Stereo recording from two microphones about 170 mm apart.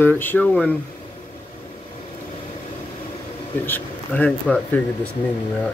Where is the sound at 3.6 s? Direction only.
10° left (ahead or behind).